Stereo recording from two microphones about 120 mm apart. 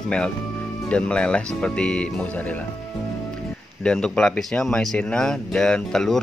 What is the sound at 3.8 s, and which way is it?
Speech, 5° left (ahead or behind).